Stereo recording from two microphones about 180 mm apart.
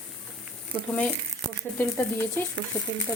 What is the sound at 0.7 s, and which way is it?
Speech, 5° left (ahead or behind).